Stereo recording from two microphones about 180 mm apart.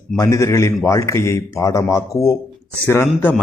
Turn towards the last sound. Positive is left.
turn(degrees=10)  # may be behind; listen again after turning